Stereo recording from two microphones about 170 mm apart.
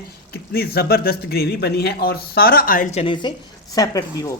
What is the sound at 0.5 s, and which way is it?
Speech, 65° left (ahead or behind).